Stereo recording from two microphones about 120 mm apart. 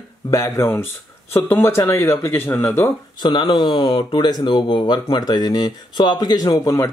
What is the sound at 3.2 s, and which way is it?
Speech, 40° left (ahead or behind).